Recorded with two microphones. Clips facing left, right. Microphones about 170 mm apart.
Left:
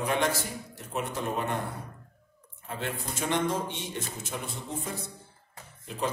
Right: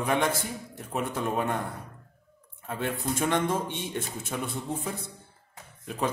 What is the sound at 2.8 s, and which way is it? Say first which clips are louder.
A man's voice: right 5 dB; 50° right (ahead or behind).